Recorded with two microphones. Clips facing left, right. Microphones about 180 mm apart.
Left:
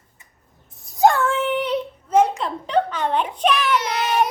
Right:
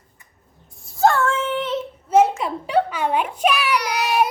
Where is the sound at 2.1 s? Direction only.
5° right (ahead or behind).